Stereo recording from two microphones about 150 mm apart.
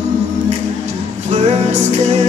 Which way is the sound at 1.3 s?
50° right (ahead or behind).